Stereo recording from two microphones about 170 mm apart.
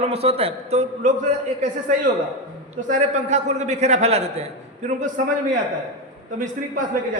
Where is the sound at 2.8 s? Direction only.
45° right (ahead or behind).